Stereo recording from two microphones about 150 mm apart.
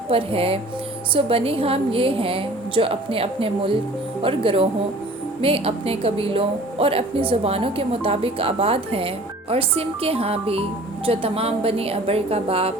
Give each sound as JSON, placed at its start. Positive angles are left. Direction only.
{"t": 0.1, "sound": "a woman's voice", "side_deg": -40}